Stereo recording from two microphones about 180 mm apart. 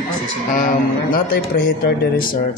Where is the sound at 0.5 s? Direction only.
50° left (ahead or behind).